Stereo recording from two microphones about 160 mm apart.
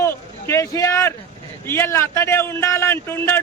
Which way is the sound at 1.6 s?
15° left (ahead or behind).